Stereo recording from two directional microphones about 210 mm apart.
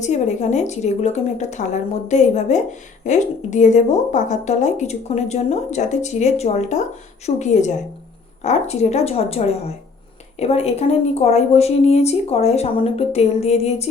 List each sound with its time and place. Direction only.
0.0 s speech: 35° left (ahead or behind)